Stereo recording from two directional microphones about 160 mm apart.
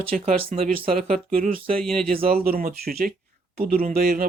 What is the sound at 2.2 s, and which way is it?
Speech, 65° right (ahead or behind).